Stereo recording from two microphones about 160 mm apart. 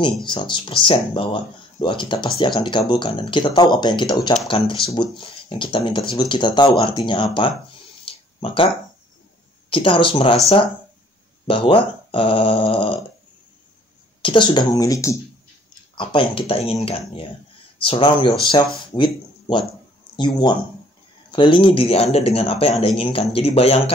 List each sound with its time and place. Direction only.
0.0 s speech: 30° left (ahead or behind)
8.0 s a sound: 35° left (ahead or behind)
9.7 s speech: 35° left (ahead or behind)
11.4 s speech: 35° left (ahead or behind)
14.2 s speech: 30° left (ahead or behind)
16.0 s speech: 30° left (ahead or behind)